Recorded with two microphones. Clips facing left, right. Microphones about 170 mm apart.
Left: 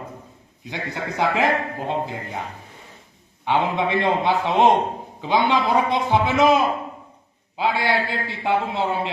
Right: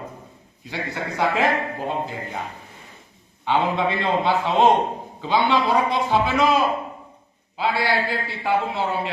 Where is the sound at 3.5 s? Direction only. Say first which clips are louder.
Even; 15° left (ahead or behind).